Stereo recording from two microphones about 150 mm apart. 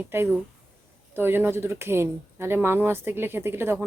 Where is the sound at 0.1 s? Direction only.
15° right (ahead or behind).